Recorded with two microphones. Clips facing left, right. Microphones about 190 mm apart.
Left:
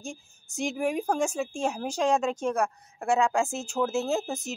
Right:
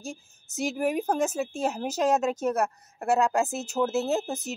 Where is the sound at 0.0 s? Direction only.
Centre (ahead or behind).